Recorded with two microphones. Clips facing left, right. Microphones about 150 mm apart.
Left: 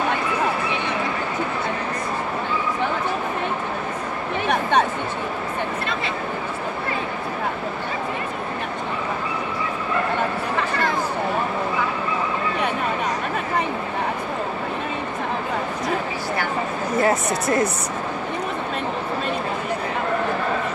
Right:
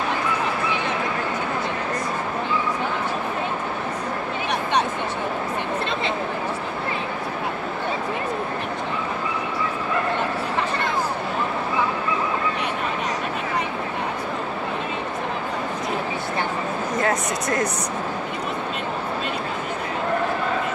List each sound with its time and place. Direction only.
16.9 s speech: 5° left (ahead or behind)